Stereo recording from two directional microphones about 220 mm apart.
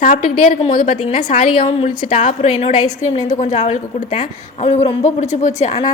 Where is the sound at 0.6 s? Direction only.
30° left (ahead or behind).